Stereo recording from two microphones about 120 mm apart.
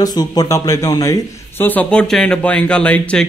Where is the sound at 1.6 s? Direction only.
10° left (ahead or behind).